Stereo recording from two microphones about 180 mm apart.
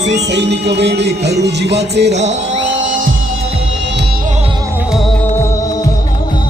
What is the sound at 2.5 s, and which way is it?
Music, 85° right.